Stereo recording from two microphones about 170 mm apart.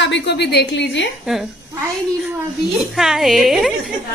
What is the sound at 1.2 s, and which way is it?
Speech, centre (ahead or behind).